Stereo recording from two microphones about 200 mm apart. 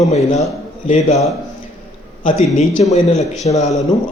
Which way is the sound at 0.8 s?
35° left (ahead or behind).